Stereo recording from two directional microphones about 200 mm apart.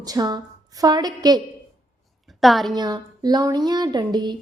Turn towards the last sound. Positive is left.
turn(degrees=-20)  # may be behind; listen again after turning